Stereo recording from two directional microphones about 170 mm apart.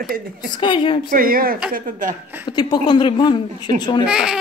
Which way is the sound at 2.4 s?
25° left (ahead or behind).